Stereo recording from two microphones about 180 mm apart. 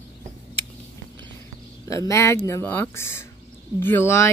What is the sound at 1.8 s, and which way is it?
Speech, 20° left (ahead or behind).